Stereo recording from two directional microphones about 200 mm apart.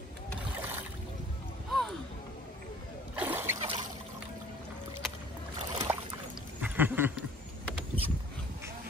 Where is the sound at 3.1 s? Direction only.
10° right (ahead or behind).